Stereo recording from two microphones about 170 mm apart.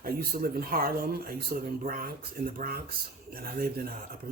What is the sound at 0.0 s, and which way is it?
Speech, 60° right (ahead or behind).